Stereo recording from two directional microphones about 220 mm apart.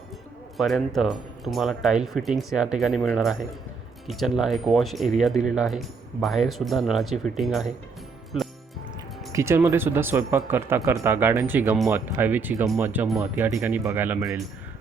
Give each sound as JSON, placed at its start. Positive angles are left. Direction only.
{"t": 0.5, "sound": "speech", "side_deg": 0}
{"t": 9.3, "sound": "speech", "side_deg": -10}